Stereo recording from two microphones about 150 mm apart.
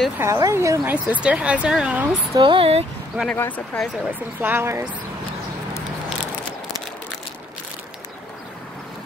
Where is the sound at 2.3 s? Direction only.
35° right (ahead or behind).